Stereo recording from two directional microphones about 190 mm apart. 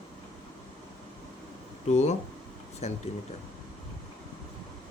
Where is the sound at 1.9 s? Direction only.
35° left (ahead or behind).